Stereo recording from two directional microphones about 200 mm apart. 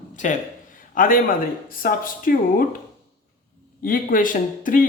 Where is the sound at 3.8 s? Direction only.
40° left (ahead or behind).